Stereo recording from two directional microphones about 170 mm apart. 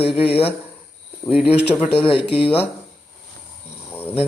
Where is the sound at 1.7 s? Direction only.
10° left (ahead or behind).